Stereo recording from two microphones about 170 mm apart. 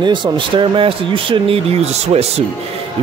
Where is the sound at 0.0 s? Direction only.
25° right (ahead or behind).